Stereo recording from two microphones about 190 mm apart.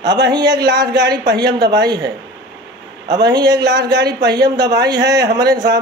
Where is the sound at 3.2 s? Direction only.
20° right (ahead or behind).